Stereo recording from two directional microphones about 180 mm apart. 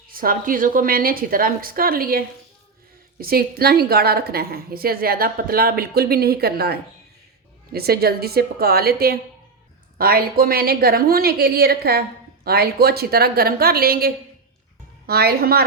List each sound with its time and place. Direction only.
0.1 s a woman's voice: 50° right (ahead or behind)